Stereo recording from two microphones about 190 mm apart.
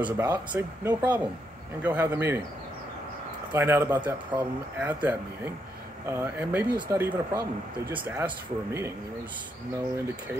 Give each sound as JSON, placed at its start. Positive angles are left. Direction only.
{"t": 0.0, "sound": "speech", "side_deg": -10}
{"t": 3.5, "sound": "speech", "side_deg": -10}
{"t": 4.3, "sound": "speech", "side_deg": -25}
{"t": 4.7, "sound": "speech", "side_deg": -10}